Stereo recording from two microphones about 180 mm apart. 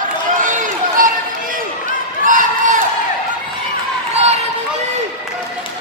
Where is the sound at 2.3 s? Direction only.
45° right (ahead or behind).